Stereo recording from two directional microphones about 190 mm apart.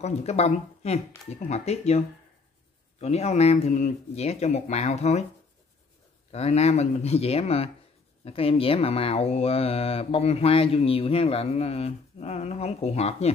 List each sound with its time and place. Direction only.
0.0 s speech: 35° left (ahead or behind)
6.3 s speech: 35° left (ahead or behind)